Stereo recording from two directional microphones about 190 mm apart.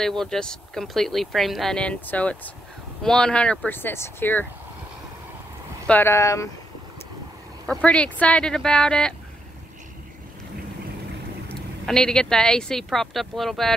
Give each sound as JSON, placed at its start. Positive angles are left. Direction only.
{"t": 0.2, "sound": "speech", "side_deg": 5}
{"t": 5.9, "sound": "speech", "side_deg": 10}
{"t": 7.6, "sound": "speech", "side_deg": 5}
{"t": 11.4, "sound": "speech", "side_deg": 5}